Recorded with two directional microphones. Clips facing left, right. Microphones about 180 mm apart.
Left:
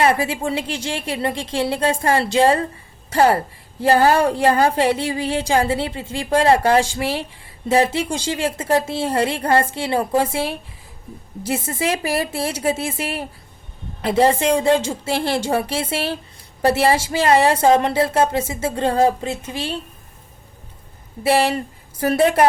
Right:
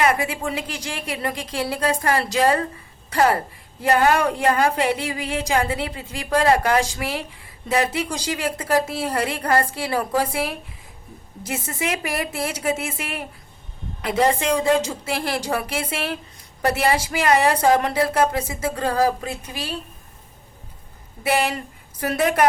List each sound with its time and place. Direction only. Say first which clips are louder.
0.0 s a woman's voice: left 3 dB; 30° left (ahead or behind)
21.2 s a woman's voice: left 4 dB; 30° left (ahead or behind)